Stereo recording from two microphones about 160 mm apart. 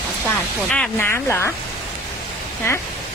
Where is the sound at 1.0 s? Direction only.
15° left (ahead or behind).